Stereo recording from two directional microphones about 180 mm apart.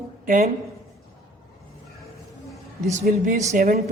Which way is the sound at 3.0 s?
45° right (ahead or behind).